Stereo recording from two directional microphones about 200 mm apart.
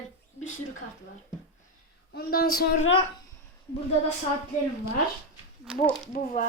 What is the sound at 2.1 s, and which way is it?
Speech, 50° left (ahead or behind).